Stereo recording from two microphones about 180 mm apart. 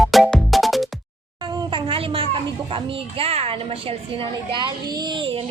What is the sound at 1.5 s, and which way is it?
A child's voice, 25° right (ahead or behind).